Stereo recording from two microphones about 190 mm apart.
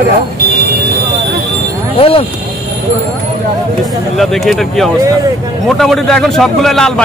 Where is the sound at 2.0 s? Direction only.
30° left (ahead or behind).